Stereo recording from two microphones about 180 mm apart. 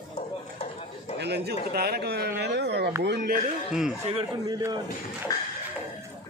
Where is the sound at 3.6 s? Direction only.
Centre (ahead or behind).